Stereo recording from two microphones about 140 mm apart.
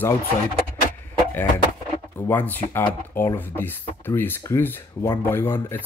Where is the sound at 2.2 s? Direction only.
15° left (ahead or behind).